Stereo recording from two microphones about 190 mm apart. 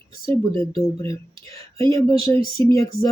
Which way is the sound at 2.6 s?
25° right (ahead or behind).